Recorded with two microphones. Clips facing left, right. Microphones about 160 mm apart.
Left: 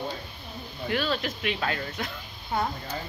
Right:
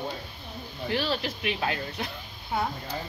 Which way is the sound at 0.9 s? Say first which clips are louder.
Left 1 dB; 30° right (ahead or behind).